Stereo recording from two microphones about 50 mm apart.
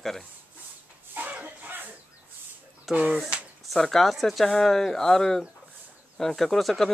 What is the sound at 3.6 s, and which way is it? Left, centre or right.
Speech, centre.